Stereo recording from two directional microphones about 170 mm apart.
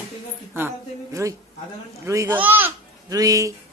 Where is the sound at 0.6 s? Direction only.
15° right (ahead or behind).